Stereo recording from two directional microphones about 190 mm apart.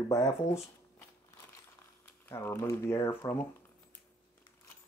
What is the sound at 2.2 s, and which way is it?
Speech, 15° left (ahead or behind).